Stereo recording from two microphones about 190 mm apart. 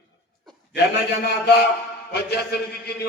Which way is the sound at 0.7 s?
60° left (ahead or behind).